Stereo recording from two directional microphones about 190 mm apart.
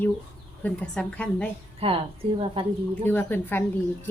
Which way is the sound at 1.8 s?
30° right (ahead or behind).